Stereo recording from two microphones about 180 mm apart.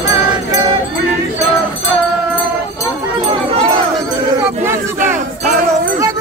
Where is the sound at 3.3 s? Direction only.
35° right (ahead or behind).